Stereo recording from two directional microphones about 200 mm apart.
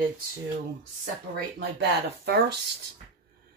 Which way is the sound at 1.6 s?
55° right (ahead or behind).